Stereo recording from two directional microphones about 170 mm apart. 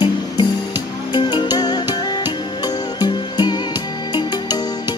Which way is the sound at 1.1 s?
25° left (ahead or behind).